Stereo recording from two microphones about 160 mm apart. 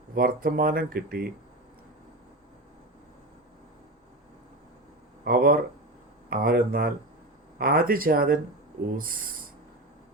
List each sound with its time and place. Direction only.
0.1 s speech: 65° right (ahead or behind)
5.2 s speech: 65° right (ahead or behind)